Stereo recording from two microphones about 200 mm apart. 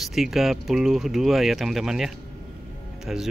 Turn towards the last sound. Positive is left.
turn(degrees=0)  # may be behind; listen again after turning